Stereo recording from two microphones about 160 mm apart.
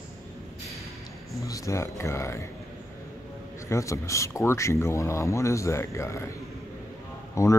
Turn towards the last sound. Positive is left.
turn(degrees=20)  # may be behind; listen again after turning